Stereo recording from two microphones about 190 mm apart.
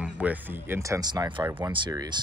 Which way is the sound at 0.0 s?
10° right (ahead or behind).